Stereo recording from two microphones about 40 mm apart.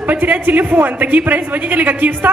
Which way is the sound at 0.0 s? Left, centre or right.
Right.